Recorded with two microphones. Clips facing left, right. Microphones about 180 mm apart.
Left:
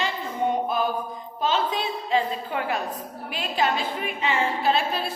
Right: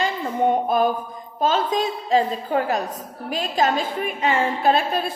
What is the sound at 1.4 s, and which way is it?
A woman's voice, 45° right (ahead or behind).